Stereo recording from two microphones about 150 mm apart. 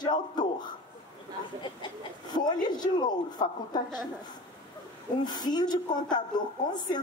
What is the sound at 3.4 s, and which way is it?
Speech, 30° left (ahead or behind).